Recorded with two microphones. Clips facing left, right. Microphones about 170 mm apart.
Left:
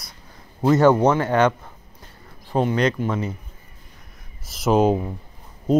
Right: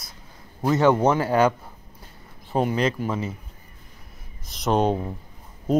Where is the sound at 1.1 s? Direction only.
30° right (ahead or behind).